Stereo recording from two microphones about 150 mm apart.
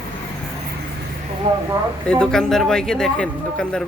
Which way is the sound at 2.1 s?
5° left (ahead or behind).